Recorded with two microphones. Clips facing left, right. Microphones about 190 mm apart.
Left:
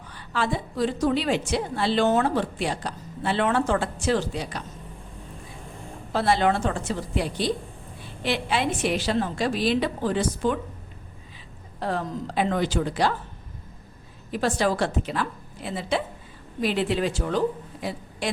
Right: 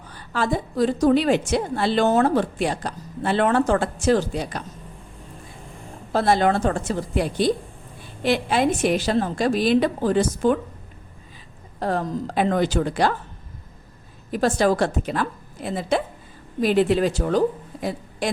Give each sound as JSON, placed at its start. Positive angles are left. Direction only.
{"t": 0.1, "sound": "a woman's voice", "side_deg": -45}
{"t": 6.1, "sound": "a woman's voice", "side_deg": -45}
{"t": 11.8, "sound": "a woman's voice", "side_deg": -45}
{"t": 14.3, "sound": "a woman's voice", "side_deg": -45}